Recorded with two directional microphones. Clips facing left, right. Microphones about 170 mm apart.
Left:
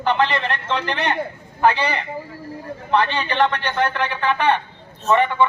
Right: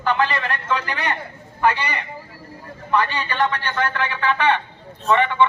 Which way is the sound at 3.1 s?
65° left (ahead or behind).